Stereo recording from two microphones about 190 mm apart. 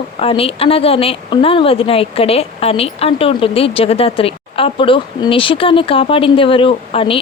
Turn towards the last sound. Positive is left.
turn(degrees=30)  # may be behind; listen again after turning